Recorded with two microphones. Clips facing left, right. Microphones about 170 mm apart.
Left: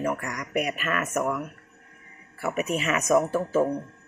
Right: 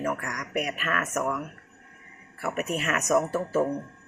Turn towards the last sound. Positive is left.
turn(degrees=0)  # may be behind; listen again after turning